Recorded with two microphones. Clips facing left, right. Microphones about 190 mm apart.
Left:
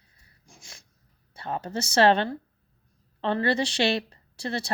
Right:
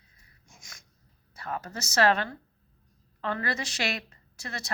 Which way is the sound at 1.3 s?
30° left (ahead or behind).